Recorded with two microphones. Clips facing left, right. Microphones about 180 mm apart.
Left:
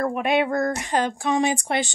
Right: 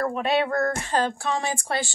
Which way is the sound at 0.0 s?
15° left (ahead or behind).